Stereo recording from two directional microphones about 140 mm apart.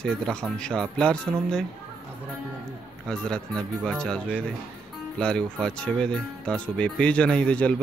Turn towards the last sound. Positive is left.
turn(degrees=10)  # may be behind; listen again after turning